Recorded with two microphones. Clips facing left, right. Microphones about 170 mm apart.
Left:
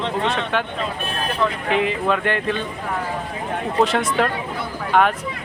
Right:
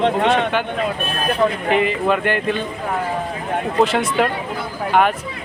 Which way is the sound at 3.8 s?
Centre (ahead or behind).